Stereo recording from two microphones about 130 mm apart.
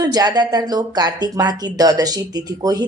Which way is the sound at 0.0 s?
30° right (ahead or behind).